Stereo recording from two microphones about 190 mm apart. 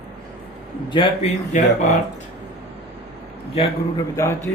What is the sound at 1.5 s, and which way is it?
Speech, 40° left (ahead or behind).